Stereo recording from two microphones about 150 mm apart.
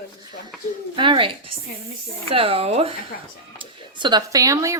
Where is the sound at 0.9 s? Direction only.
35° right (ahead or behind).